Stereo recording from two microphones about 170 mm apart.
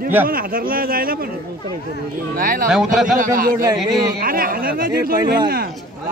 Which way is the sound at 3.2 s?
55° right (ahead or behind).